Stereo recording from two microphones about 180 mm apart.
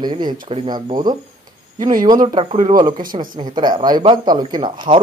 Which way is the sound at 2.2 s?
30° right (ahead or behind).